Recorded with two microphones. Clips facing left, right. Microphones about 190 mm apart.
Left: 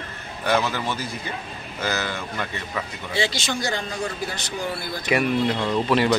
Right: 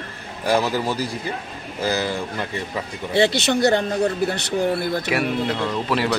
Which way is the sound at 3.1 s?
65° right (ahead or behind).